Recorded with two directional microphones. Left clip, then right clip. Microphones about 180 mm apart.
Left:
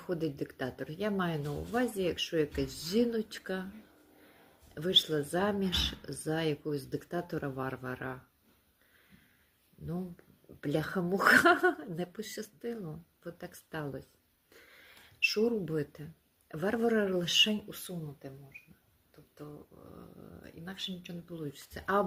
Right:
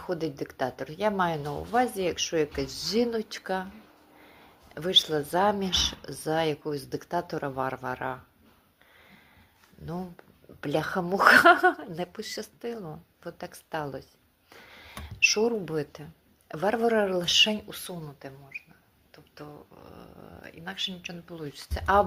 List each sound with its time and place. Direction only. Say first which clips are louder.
0.0 s speech: right 4 dB; 25° left (ahead or behind)
4.7 s speech: right 5 dB; 25° left (ahead or behind)
10.6 s speech: right 5 dB; 25° left (ahead or behind)
14.5 s a sound: right 10 dB; 25° left (ahead or behind)
16.5 s speech: right 6 dB; 25° left (ahead or behind)
20.0 s speech: right 7 dB; 20° left (ahead or behind)